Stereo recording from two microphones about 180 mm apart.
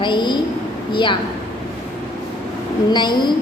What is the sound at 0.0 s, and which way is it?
Speech, 25° left (ahead or behind).